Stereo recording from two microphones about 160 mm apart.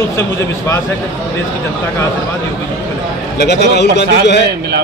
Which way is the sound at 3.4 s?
90° left.